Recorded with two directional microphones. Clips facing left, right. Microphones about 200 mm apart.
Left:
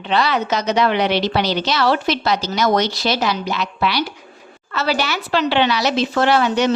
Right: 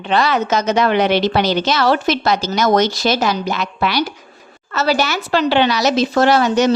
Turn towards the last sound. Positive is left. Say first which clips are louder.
# right 3 dB
turn(degrees=-40)  # may be behind; listen again after turning